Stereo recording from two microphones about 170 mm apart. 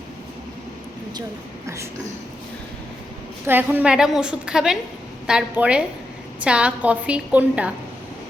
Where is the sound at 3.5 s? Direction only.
10° right (ahead or behind).